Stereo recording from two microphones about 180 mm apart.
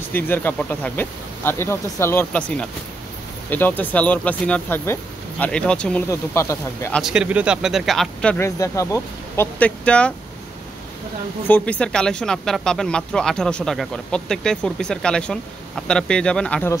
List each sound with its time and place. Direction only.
0.1 s speech: 10° left (ahead or behind)
6.0 s speech: 15° left (ahead or behind)
7.0 s speech: 5° right (ahead or behind)
8.5 s speech: 15° left (ahead or behind)
11.4 s speech: 10° left (ahead or behind)